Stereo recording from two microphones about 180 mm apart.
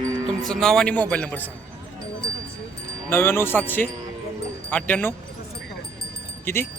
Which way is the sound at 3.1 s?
10° left (ahead or behind).